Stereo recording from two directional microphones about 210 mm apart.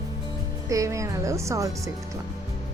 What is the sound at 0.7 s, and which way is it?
A woman's voice, 15° right (ahead or behind).